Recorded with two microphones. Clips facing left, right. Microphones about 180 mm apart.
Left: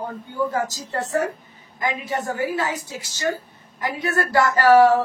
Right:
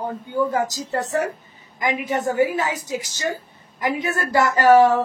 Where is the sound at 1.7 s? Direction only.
20° right (ahead or behind).